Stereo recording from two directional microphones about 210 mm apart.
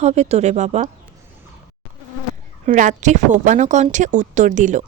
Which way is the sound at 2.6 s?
35° right (ahead or behind).